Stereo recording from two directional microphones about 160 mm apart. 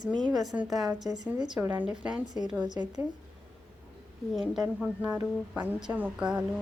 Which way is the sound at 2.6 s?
25° right (ahead or behind).